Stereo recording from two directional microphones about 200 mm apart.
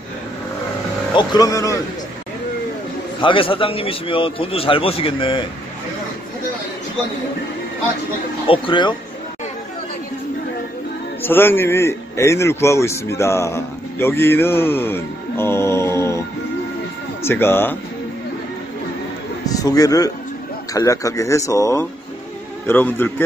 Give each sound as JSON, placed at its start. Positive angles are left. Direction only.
{"t": 1.1, "sound": "a man's voice", "side_deg": 20}
{"t": 3.2, "sound": "a man's voice", "side_deg": 25}
{"t": 8.5, "sound": "a man's voice", "side_deg": 25}
{"t": 11.2, "sound": "a man's voice", "side_deg": 10}
{"t": 19.4, "sound": "a man's voice", "side_deg": 20}